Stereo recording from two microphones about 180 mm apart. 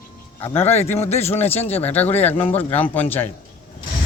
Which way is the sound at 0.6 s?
35° left (ahead or behind).